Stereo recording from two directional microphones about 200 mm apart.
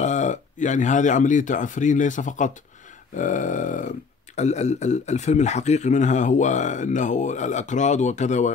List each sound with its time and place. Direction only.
0.0 s speech: 35° left (ahead or behind)